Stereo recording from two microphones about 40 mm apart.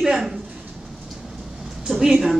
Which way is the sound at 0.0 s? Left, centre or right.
Centre.